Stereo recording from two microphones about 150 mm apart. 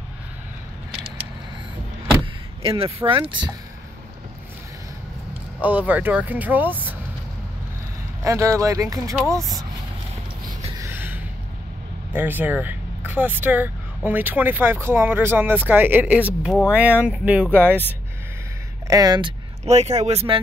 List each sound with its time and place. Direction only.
2.6 s speech: 40° right (ahead or behind)
5.6 s speech: 10° right (ahead or behind)
8.2 s speech: 20° right (ahead or behind)
10.8 s gasp: 15° right (ahead or behind)
12.1 s speech: 10° right (ahead or behind)
18.9 s speech: 25° right (ahead or behind)
19.6 s speech: 50° right (ahead or behind)